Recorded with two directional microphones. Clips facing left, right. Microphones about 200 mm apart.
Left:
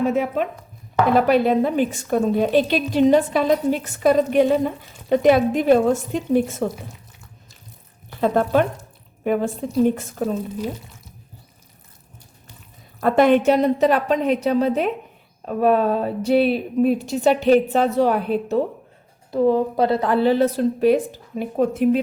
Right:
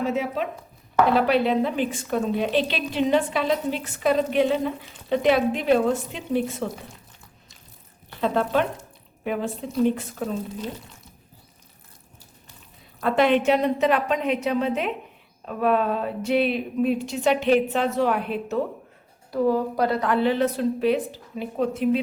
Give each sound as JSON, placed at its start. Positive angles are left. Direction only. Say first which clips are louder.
{"t": 0.1, "sound": "a woman's voice", "louder": "left 4 dB", "side_deg": 50}
{"t": 8.2, "sound": "a woman's voice", "louder": "left 4 dB", "side_deg": 45}
{"t": 13.0, "sound": "a woman's voice", "louder": "left 5 dB", "side_deg": 45}
{"t": 19.3, "sound": "a woman's voice", "louder": "left 4 dB", "side_deg": 25}